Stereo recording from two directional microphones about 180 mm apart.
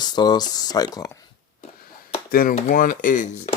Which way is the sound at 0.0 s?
25° left (ahead or behind).